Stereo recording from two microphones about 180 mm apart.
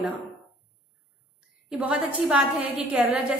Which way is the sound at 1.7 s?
5° right (ahead or behind).